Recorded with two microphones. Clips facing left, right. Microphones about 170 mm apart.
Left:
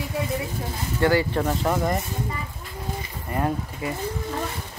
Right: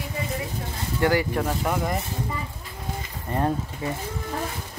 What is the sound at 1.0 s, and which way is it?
Speech, 20° right (ahead or behind).